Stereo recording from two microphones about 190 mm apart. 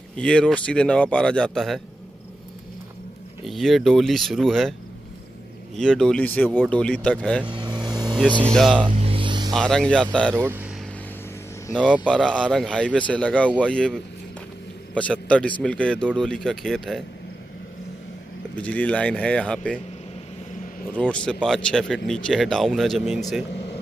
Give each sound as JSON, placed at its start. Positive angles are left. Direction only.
{"t": 0.1, "sound": "speech", "side_deg": 5}
{"t": 3.4, "sound": "speech", "side_deg": 0}
{"t": 5.8, "sound": "speech", "side_deg": 0}
{"t": 7.4, "sound": "vehicle", "side_deg": -25}
{"t": 8.3, "sound": "speech", "side_deg": -25}
{"t": 8.5, "sound": "speech", "side_deg": 0}
{"t": 8.9, "sound": "a sound", "side_deg": -30}
{"t": 9.5, "sound": "speech", "side_deg": 5}
{"t": 10.3, "sound": "speech", "side_deg": -10}
{"t": 12.1, "sound": "a man's voice", "side_deg": 5}
{"t": 18.6, "sound": "speech", "side_deg": 5}
{"t": 20.9, "sound": "speech", "side_deg": 5}